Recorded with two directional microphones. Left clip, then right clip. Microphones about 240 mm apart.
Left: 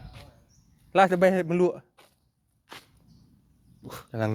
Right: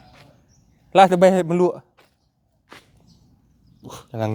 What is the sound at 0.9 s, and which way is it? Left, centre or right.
Speech, centre.